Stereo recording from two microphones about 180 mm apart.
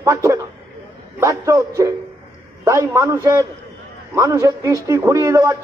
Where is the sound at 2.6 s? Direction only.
15° right (ahead or behind).